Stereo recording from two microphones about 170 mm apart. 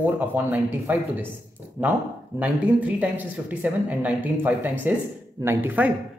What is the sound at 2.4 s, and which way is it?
A woman's voice, 10° right (ahead or behind).